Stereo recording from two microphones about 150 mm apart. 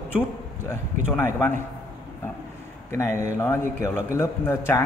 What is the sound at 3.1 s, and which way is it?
Speech, 55° right (ahead or behind).